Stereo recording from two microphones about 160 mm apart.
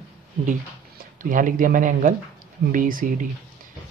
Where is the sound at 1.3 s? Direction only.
60° right (ahead or behind).